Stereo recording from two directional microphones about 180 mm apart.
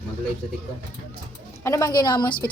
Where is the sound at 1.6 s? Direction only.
15° left (ahead or behind).